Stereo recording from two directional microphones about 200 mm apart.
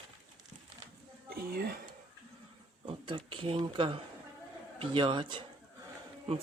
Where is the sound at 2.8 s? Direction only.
25° right (ahead or behind).